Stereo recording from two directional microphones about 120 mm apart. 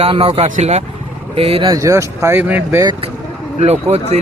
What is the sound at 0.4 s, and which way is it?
Speech, 80° right.